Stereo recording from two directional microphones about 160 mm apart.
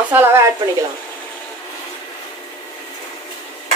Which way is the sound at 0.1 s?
15° right (ahead or behind).